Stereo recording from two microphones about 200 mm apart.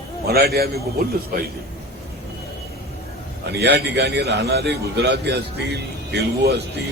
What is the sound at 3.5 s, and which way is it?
A man's voice, 55° right (ahead or behind).